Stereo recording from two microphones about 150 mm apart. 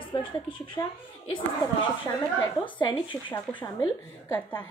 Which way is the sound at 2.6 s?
35° left (ahead or behind).